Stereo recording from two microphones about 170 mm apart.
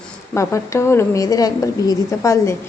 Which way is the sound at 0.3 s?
15° left (ahead or behind).